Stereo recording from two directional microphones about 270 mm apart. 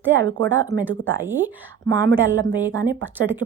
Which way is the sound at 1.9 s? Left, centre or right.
Right.